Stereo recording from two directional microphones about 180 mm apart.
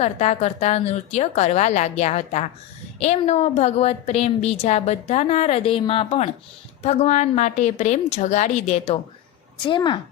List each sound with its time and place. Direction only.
0.0 s a woman's voice: 35° left (ahead or behind)
9.6 s a woman's voice: 25° left (ahead or behind)